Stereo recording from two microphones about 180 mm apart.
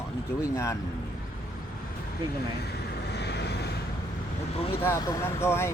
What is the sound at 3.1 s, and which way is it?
Vehicle, 70° left (ahead or behind).